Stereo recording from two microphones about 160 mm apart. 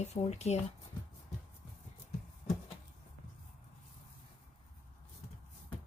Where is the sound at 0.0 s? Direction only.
45° left (ahead or behind).